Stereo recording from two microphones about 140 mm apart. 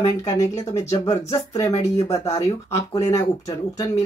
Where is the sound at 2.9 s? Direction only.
20° left (ahead or behind).